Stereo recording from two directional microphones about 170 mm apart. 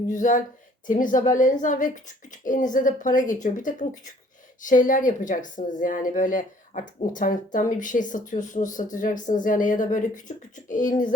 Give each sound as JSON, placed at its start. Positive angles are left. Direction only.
{"t": 0.1, "sound": "speech", "side_deg": 50}